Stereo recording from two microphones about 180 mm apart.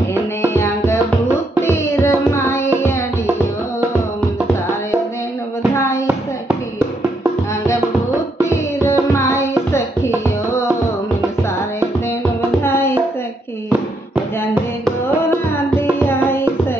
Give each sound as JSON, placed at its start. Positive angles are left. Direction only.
{"t": 0.5, "sound": "music", "side_deg": 15}
{"t": 5.8, "sound": "a sound", "side_deg": 15}
{"t": 8.5, "sound": "music", "side_deg": 15}
{"t": 12.6, "sound": "music", "side_deg": 15}
{"t": 15.7, "sound": "music", "side_deg": 10}